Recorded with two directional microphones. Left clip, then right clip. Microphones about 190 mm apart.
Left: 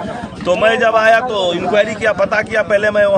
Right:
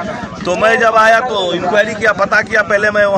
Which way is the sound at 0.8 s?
10° left (ahead or behind).